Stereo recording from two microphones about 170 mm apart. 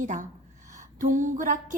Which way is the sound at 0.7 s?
50° right (ahead or behind).